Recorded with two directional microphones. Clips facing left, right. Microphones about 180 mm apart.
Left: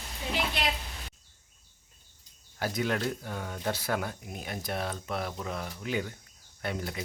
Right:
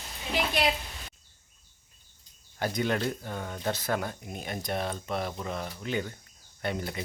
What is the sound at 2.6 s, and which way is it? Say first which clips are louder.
Speech: right 1 dB; 5° left (ahead or behind).